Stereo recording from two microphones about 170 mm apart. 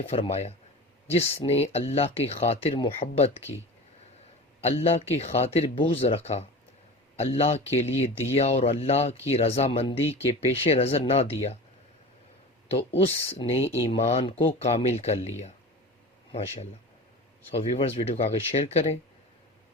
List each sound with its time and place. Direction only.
0.0 s speech: 35° left (ahead or behind)
4.6 s speech: 35° left (ahead or behind)
13.0 s speech: 35° left (ahead or behind)
17.5 s speech: 35° left (ahead or behind)